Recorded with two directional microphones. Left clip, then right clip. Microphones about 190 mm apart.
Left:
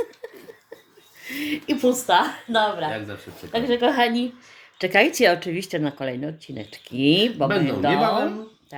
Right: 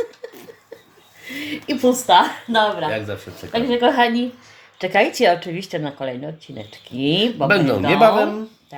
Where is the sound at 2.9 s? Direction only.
30° right (ahead or behind).